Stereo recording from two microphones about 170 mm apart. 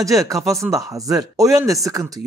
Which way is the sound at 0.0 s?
20° right (ahead or behind).